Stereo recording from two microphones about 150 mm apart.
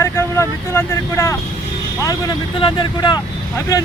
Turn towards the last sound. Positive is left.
turn(degrees=25)  # may be behind; listen again after turning